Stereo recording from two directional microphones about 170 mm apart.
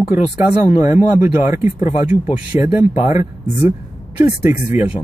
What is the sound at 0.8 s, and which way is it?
Speech, 10° right (ahead or behind).